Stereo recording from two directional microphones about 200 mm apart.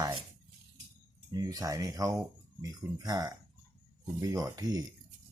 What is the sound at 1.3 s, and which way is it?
Speech, 20° right (ahead or behind).